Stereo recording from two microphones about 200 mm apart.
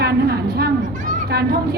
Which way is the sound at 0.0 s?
55° right (ahead or behind).